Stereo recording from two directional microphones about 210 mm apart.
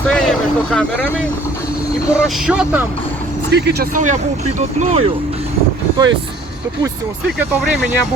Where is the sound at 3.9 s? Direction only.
35° right (ahead or behind).